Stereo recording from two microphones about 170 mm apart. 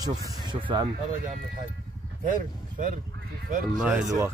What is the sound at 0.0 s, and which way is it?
Speech, 20° right (ahead or behind).